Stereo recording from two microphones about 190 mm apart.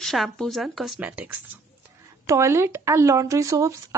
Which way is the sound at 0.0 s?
Centre (ahead or behind).